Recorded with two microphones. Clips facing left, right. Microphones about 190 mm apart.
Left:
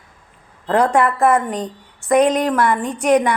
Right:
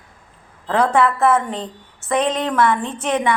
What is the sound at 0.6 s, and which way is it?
A woman's voice, 15° left (ahead or behind).